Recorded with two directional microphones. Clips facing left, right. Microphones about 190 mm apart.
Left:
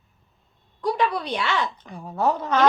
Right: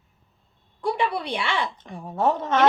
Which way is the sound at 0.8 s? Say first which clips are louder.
Left 1 dB; 25° right (ahead or behind).